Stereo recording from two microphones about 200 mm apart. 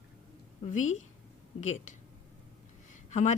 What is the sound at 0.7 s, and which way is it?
Speech, 40° left (ahead or behind).